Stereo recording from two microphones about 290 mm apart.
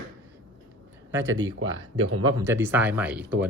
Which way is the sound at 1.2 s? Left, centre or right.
Right.